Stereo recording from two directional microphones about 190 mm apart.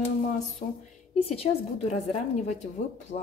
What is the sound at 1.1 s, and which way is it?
Speech, 30° left (ahead or behind).